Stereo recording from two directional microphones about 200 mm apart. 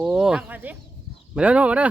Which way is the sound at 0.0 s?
5° right (ahead or behind).